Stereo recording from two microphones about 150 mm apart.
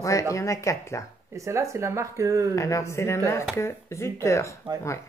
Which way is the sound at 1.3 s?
20° right (ahead or behind).